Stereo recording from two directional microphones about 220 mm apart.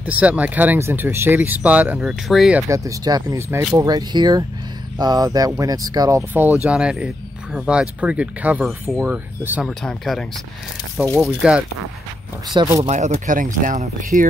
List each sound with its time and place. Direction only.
0.0 s speech: 5° right (ahead or behind)
2.7 s speech: 15° right (ahead or behind)
12.5 s speech: 15° right (ahead or behind)
12.8 s speech: 30° right (ahead or behind)